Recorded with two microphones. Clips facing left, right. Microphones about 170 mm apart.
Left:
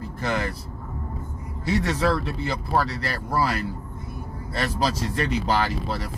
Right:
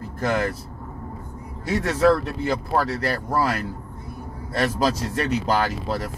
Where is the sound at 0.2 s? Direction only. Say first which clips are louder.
Right 4 dB; 45° right (ahead or behind).